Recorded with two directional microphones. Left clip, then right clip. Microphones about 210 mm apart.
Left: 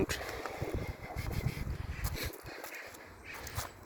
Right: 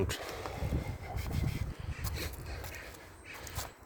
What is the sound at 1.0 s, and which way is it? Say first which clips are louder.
Boat: even; centre (ahead or behind).